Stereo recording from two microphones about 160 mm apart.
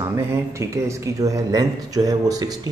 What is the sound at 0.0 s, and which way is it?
Speech, 15° right (ahead or behind).